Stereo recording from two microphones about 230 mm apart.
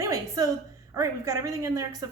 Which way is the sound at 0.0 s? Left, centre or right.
Centre.